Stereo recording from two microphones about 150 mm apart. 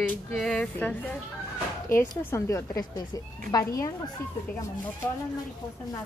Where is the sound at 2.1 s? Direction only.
20° left (ahead or behind).